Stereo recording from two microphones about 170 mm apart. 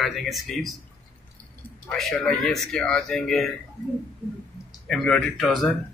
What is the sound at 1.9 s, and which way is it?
Speech, centre (ahead or behind).